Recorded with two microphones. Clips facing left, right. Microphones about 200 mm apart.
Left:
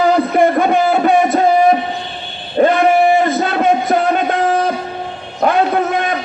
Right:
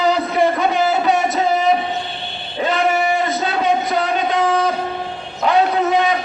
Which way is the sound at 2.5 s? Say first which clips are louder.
Left 7 dB; 50° left (ahead or behind).